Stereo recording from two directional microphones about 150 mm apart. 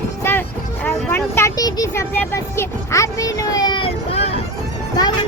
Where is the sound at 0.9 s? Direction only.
15° left (ahead or behind); by 4.4 s 40° left (ahead or behind).